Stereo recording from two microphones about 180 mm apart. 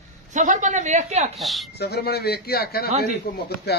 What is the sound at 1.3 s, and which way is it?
Speech, centre (ahead or behind).